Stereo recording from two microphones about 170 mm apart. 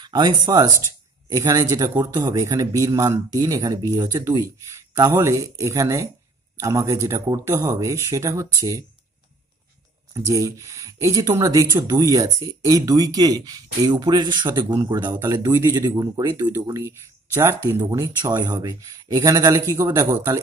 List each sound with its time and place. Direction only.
0.0 s speech: 25° right (ahead or behind)
10.1 s speech: 20° right (ahead or behind)